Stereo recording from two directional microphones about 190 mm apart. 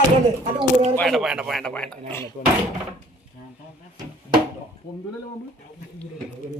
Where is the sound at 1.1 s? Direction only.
Centre (ahead or behind).